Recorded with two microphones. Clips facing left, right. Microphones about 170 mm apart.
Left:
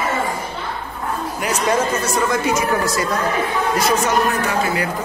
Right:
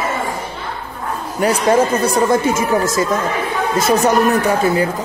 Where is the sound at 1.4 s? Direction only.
30° right (ahead or behind).